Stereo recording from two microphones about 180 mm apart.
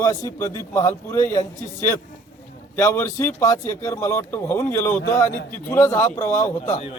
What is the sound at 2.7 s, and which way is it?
Speech, 15° left (ahead or behind).